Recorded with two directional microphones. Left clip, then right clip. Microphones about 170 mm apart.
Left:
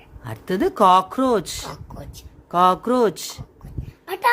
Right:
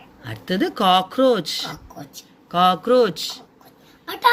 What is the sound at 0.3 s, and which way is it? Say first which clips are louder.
Speech: left 1 dB; 45° left (ahead or behind).